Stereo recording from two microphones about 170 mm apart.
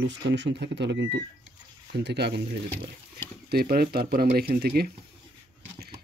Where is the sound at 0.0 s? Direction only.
90° right.